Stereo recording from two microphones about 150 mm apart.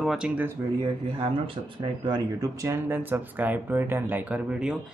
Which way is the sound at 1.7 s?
30° right (ahead or behind).